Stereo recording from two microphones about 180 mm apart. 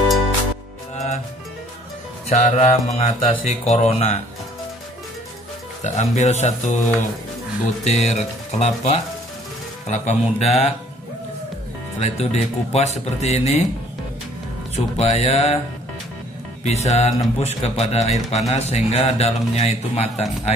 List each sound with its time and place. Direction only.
0.9 s music: 40° left (ahead or behind)
2.2 s speech: 40° left (ahead or behind)
5.9 s speech: 40° left (ahead or behind)
12.0 s speech: 35° left (ahead or behind)
15.0 s speech: 35° left (ahead or behind)
16.6 s speech: 35° left (ahead or behind)